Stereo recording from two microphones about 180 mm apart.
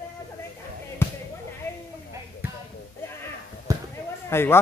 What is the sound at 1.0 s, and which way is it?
Basketball bounce, 10° left (ahead or behind).